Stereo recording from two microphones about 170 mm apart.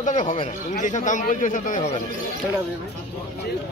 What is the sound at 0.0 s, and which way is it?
A man's voice, 45° left (ahead or behind).